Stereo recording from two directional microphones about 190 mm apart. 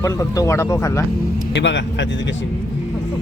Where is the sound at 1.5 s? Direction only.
70° left (ahead or behind).